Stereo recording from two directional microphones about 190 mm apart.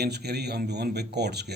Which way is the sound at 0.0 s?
60° right (ahead or behind).